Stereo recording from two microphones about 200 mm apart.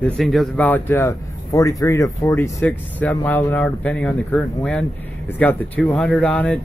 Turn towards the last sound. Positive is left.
turn(degrees=5)  # may be behind; listen again after turning